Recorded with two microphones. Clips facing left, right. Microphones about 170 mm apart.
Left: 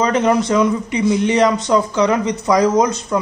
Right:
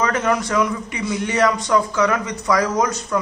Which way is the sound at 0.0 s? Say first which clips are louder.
Left 5 dB; 20° left (ahead or behind).